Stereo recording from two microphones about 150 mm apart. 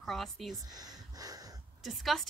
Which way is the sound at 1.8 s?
Centre (ahead or behind).